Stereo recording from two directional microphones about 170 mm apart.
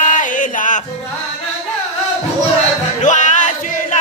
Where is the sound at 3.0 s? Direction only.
45° left (ahead or behind).